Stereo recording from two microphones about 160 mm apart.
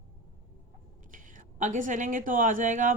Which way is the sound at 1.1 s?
55° right (ahead or behind).